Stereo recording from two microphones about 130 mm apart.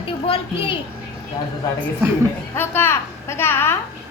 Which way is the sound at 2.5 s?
15° left (ahead or behind).